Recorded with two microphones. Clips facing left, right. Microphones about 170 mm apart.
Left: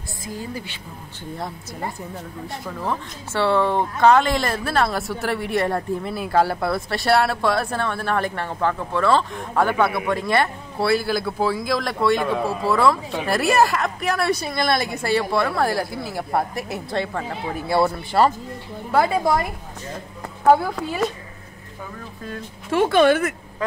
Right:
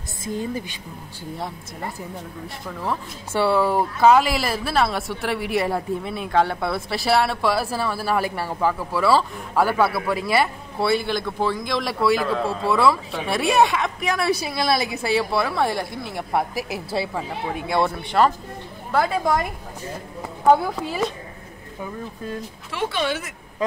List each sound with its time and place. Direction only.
0.2 s a woman's voice: 20° right (ahead or behind)
2.4 s a woman's voice: centre (ahead or behind)
20.4 s speech: centre (ahead or behind)
22.7 s speech: 50° left (ahead or behind)